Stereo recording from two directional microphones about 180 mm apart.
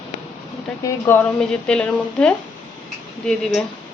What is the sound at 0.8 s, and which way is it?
Speech, 10° left (ahead or behind).